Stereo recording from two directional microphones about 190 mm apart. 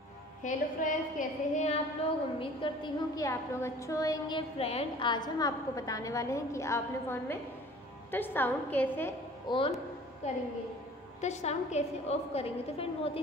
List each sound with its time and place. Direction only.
0.4 s a woman's voice: 40° left (ahead or behind); by 4.4 s 20° left (ahead or behind)
4.6 s a woman's voice: 30° left (ahead or behind); by 9.1 s 10° left (ahead or behind)
9.5 s a woman's voice: 25° left (ahead or behind)
11.1 s a woman's voice: 35° left (ahead or behind)